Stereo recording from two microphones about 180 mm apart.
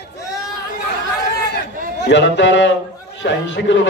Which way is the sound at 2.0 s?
75° left (ahead or behind).